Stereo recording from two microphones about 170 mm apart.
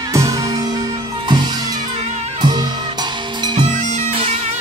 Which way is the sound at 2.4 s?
25° right (ahead or behind).